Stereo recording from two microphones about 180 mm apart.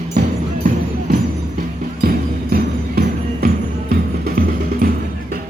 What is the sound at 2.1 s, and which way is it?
Music, 55° right (ahead or behind).